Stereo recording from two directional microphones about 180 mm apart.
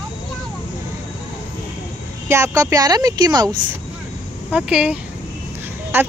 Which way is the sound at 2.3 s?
15° right (ahead or behind).